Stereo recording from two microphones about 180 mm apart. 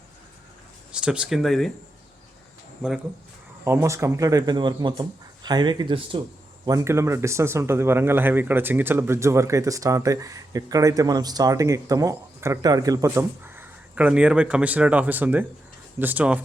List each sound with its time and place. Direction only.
0.9 s speech: 5° right (ahead or behind)
3.6 s speech: 15° right (ahead or behind)
6.7 s speech: 15° right (ahead or behind)